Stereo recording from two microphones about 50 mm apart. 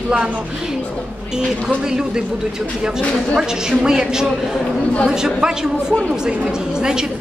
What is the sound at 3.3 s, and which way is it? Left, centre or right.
A woman's voice, centre.